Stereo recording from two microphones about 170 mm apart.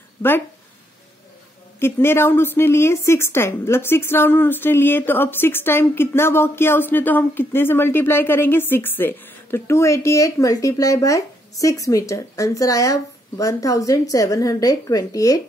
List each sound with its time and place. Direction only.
1.8 s a woman's voice: 15° left (ahead or behind)